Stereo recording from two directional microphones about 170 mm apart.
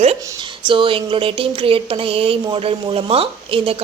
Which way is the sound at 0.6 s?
30° right (ahead or behind).